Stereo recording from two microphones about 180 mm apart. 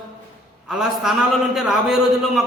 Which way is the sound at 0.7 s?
5° right (ahead or behind).